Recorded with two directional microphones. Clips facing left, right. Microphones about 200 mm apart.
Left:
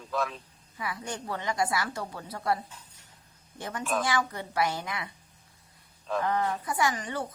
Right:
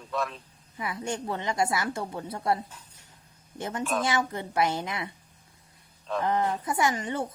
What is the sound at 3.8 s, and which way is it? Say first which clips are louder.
Speech: right 1 dB; centre (ahead or behind).